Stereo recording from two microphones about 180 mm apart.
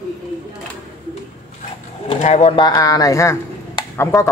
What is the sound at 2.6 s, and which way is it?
A man's voice, 20° left (ahead or behind).